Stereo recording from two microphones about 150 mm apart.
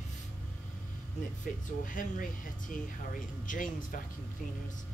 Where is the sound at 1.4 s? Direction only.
60° left (ahead or behind).